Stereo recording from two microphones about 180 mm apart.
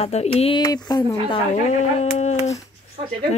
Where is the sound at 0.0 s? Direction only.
35° left (ahead or behind).